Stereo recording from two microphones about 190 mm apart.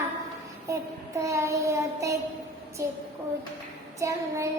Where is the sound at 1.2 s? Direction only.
15° right (ahead or behind).